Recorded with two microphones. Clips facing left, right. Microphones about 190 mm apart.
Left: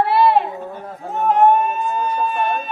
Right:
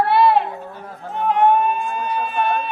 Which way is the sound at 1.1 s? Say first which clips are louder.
Left 2 dB; 45° left (ahead or behind).